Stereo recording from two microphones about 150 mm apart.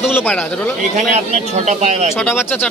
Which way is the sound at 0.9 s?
50° right (ahead or behind).